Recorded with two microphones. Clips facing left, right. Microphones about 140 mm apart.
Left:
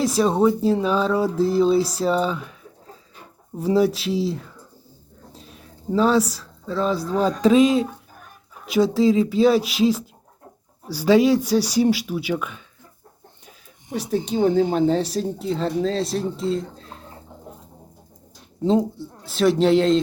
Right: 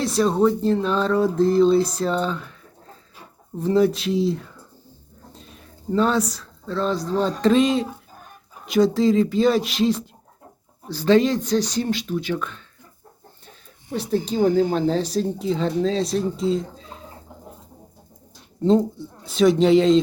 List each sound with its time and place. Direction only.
0.0 s speech: 5° left (ahead or behind)
3.6 s speech: 5° left (ahead or behind)
13.4 s chicken: 10° left (ahead or behind)
14.4 s speech: centre (ahead or behind)
18.6 s speech: centre (ahead or behind)